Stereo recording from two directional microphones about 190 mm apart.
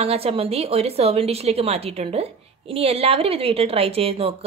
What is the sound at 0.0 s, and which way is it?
A woman's voice, 30° right (ahead or behind).